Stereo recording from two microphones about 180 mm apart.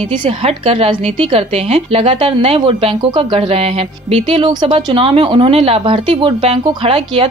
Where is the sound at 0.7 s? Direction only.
30° right (ahead or behind).